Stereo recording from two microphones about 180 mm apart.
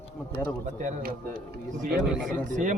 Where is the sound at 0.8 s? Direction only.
45° right (ahead or behind).